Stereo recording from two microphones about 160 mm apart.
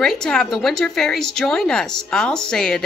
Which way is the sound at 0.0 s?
5° left (ahead or behind).